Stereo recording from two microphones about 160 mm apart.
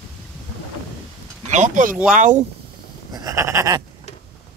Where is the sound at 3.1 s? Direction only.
20° right (ahead or behind).